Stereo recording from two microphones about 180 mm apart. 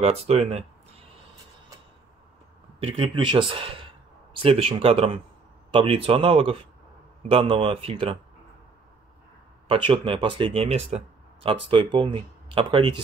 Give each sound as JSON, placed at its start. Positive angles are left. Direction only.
{"t": 0.0, "sound": "speech", "side_deg": -35}
{"t": 2.8, "sound": "speech", "side_deg": -30}
{"t": 9.7, "sound": "speech", "side_deg": -30}